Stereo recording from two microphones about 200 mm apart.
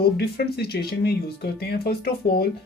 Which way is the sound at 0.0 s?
50° left (ahead or behind).